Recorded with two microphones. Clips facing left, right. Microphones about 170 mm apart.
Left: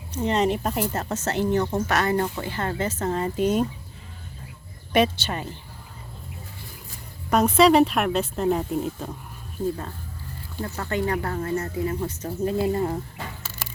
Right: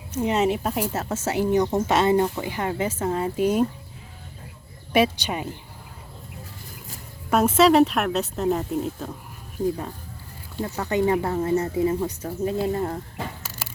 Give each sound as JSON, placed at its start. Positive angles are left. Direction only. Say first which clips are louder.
{"t": 0.1, "sound": "speech", "louder": "right 1 dB", "side_deg": -10}
{"t": 2.2, "sound": "speech", "louder": "right 2 dB", "side_deg": -10}
{"t": 4.9, "sound": "speech", "louder": "right 1 dB", "side_deg": -5}
{"t": 7.3, "sound": "speech", "louder": "even", "side_deg": -5}
{"t": 10.6, "sound": "speech", "louder": "right 4 dB", "side_deg": -15}
{"t": 11.9, "sound": "speech", "louder": "right 1 dB", "side_deg": -10}
{"t": 12.5, "sound": "speech", "louder": "left 3 dB", "side_deg": 0}